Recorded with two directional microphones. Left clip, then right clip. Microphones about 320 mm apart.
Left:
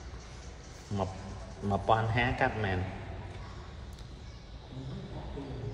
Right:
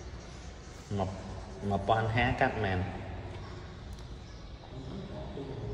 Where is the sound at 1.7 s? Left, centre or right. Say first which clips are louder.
Left 1 dB; centre.